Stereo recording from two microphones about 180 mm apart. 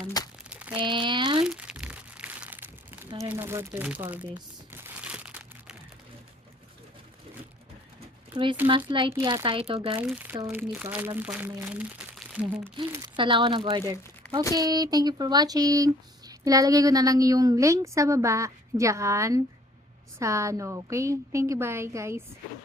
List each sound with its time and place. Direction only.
0.2 s crumpling: 20° left (ahead or behind)
0.5 s a sound: 5° right (ahead or behind)
0.8 s a sound: 25° right (ahead or behind)
1.5 s crumpling: 5° right (ahead or behind)
3.2 s a woman's voice: 15° right (ahead or behind)
4.7 s crumpling: 10° right (ahead or behind)
8.3 s speech: 25° right (ahead or behind)
10.0 s a woman's voice: 10° right (ahead or behind)
12.9 s a woman's voice: 25° right (ahead or behind)